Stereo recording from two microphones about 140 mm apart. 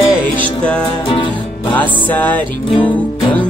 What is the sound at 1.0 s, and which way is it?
Music, 35° left (ahead or behind).